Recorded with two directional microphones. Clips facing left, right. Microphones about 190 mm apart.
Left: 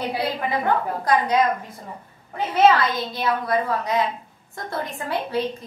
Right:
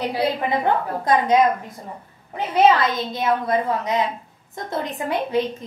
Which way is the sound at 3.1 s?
20° right (ahead or behind).